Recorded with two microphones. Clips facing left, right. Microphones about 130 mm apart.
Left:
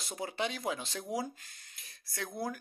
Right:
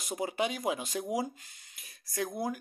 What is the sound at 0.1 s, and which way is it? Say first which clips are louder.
Speech: right 4 dB; 10° right (ahead or behind).